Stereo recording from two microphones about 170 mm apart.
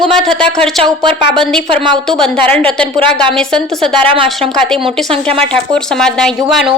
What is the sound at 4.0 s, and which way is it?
Speech, 30° right (ahead or behind).